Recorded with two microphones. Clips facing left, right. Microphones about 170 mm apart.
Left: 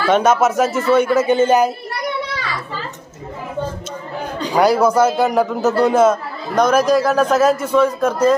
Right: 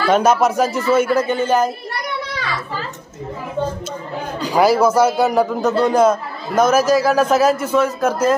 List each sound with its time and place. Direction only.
0.0 s a man's voice: centre (ahead or behind)
1.2 s speech: 20° left (ahead or behind)
4.4 s a man's voice: centre (ahead or behind)